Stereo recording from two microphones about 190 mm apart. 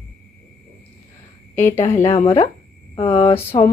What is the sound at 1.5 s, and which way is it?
Speech, 10° left (ahead or behind).